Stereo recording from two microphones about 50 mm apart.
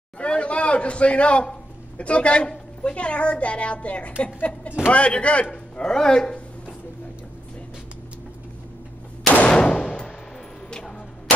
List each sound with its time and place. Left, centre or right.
0.2 s a man's voice: left
5.5 s speech: centre
9.3 s a sound: left